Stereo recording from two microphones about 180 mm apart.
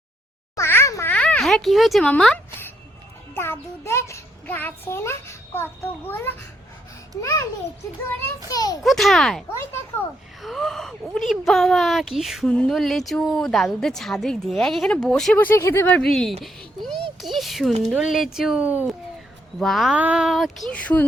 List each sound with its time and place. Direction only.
0.5 s a sound: 15° left (ahead or behind)
3.3 s a child's voice: 15° left (ahead or behind)
8.4 s a child's voice: 20° left (ahead or behind)
8.8 s speech: centre (ahead or behind)
10.4 s speech: centre (ahead or behind)